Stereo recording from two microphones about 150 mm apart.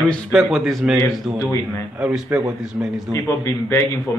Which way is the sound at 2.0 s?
10° right (ahead or behind).